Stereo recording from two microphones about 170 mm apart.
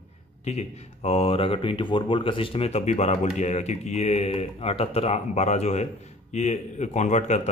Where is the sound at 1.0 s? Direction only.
35° left (ahead or behind).